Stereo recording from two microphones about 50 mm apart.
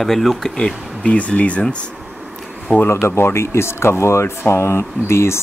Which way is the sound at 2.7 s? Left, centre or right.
Left.